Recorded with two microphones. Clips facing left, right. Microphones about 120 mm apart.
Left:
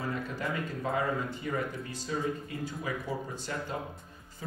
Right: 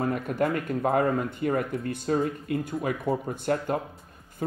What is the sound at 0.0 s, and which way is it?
Speech, 60° right (ahead or behind).